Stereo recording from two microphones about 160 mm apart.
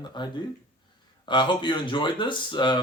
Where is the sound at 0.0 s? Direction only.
30° left (ahead or behind).